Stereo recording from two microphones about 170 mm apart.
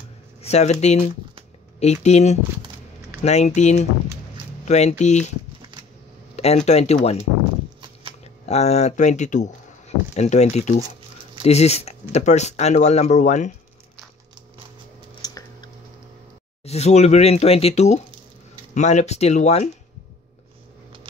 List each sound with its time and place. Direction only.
0.4 s speech: 40° left (ahead or behind)
6.3 s speech: 40° left (ahead or behind)
15.2 s a sound: 25° left (ahead or behind)
16.6 s speech: 40° left (ahead or behind)